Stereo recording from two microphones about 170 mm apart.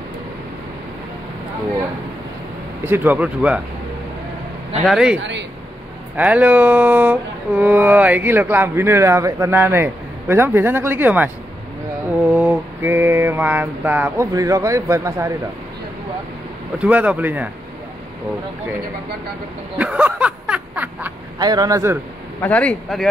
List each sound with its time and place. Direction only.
2.8 s speech: 10° right (ahead or behind)
4.8 s a man's voice: 5° right (ahead or behind)
12.4 s speech: 10° right (ahead or behind)
16.7 s speech: 10° right (ahead or behind)
19.8 s snicker: 10° right (ahead or behind)
21.4 s speech: 25° right (ahead or behind)
22.4 s speech: 10° left (ahead or behind)